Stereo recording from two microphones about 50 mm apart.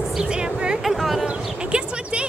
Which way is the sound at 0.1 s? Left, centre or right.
Centre.